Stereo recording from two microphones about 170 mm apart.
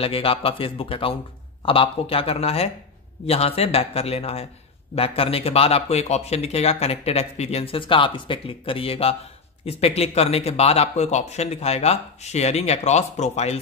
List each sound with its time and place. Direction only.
0.0 s speech: 35° left (ahead or behind)